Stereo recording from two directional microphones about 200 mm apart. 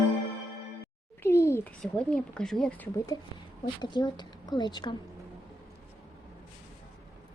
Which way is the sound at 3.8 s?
20° left (ahead or behind).